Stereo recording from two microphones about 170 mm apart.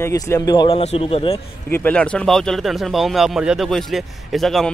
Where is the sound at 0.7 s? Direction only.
35° left (ahead or behind).